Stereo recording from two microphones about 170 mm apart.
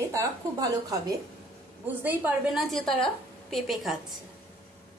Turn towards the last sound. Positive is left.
turn(degrees=0)  # may be behind; listen again after turning